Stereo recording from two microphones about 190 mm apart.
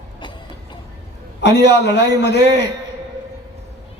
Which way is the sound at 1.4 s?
65° left (ahead or behind).